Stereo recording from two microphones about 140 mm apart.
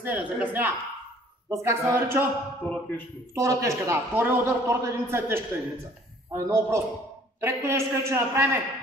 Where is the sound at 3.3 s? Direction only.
20° right (ahead or behind).